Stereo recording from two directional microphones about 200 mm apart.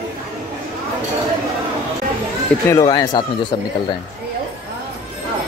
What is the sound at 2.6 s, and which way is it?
Speech, 20° left (ahead or behind).